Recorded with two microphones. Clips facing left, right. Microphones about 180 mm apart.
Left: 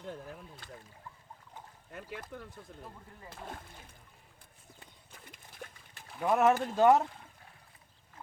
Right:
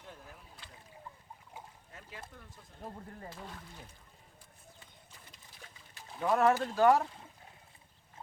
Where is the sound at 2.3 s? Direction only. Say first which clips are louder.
Left 9 dB; 70° left (ahead or behind).